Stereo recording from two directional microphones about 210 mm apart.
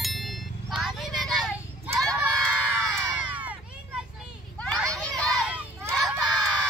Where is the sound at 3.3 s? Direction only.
5° right (ahead or behind).